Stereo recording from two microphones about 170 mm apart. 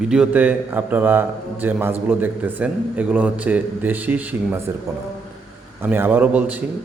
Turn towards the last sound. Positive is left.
turn(degrees=-10)  # may be behind; listen again after turning